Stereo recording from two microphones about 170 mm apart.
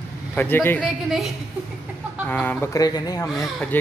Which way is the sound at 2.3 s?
10° left (ahead or behind).